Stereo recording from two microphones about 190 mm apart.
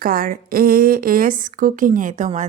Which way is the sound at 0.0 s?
50° right (ahead or behind).